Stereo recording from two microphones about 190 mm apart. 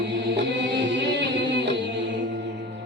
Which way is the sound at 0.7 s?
70° right (ahead or behind).